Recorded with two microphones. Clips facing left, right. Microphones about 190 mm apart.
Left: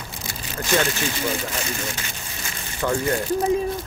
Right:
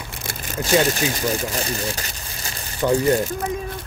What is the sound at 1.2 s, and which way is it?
Speech, 35° right (ahead or behind).